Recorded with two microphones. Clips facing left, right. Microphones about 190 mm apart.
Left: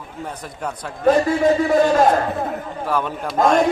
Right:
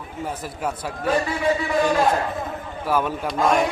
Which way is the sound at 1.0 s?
40° left (ahead or behind).